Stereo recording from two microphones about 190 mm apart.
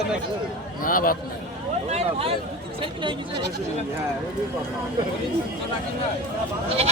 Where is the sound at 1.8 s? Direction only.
35° right (ahead or behind).